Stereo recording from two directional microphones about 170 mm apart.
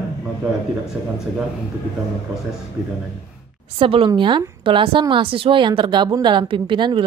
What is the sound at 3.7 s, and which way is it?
A woman's voice, 30° right (ahead or behind).